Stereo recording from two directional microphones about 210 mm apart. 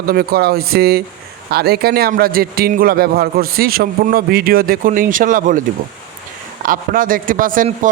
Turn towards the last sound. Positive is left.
turn(degrees=-40)  # may be behind; listen again after turning